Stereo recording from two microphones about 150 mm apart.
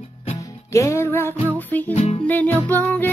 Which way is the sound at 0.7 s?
20° left (ahead or behind).